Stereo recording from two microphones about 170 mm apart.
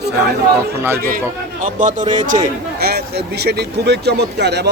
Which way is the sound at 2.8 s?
70° right (ahead or behind).